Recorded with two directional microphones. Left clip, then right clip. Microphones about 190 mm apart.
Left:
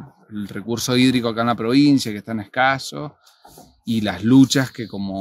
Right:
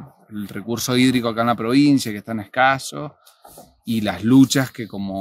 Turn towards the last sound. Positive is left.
turn(degrees=10)  # may be behind; listen again after turning